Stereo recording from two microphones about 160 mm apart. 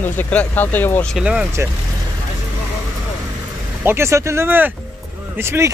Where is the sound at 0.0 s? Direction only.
10° left (ahead or behind).